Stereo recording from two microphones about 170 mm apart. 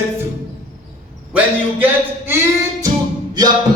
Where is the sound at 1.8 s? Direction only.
15° right (ahead or behind).